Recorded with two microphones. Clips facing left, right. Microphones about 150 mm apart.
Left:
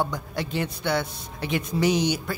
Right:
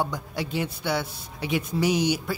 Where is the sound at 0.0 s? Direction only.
10° right (ahead or behind).